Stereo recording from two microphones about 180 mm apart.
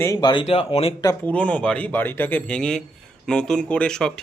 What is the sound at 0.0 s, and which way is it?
Speech, 20° left (ahead or behind).